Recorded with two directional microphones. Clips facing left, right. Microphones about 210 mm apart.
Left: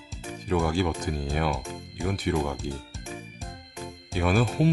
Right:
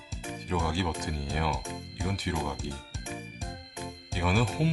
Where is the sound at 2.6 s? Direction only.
50° left (ahead or behind).